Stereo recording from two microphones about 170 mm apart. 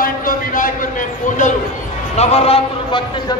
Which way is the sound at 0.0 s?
55° left (ahead or behind).